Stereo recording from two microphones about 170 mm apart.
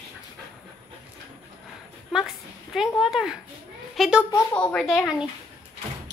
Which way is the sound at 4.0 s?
5° right (ahead or behind).